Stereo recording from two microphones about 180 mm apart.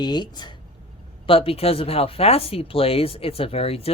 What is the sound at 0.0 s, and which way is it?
Speech, 25° left (ahead or behind).